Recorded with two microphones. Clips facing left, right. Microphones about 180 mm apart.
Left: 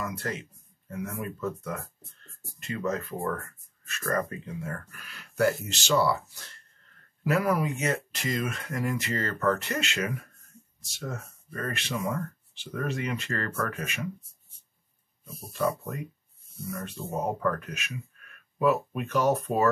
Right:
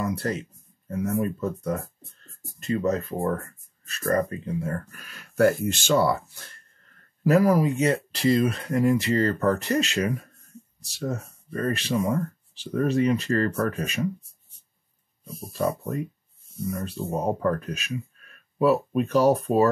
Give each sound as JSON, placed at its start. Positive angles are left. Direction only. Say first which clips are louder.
{"t": 0.0, "sound": "speech", "louder": "right 6 dB", "side_deg": -35}
{"t": 7.2, "sound": "speech", "louder": "right 6 dB", "side_deg": -35}
{"t": 15.5, "sound": "speech", "louder": "right 3 dB", "side_deg": -35}